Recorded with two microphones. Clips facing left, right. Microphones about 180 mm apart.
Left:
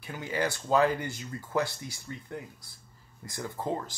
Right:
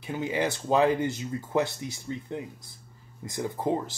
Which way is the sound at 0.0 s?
20° right (ahead or behind).